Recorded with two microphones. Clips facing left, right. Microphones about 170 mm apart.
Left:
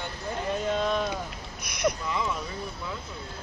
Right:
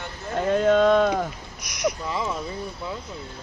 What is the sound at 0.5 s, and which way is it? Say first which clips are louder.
Speech: right 11 dB; 75° right (ahead or behind).